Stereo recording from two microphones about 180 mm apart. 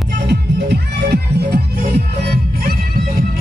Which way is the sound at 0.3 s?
70° right (ahead or behind).